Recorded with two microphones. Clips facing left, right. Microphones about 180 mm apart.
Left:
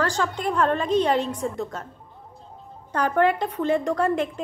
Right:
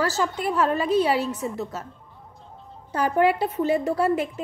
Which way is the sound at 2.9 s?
10° right (ahead or behind).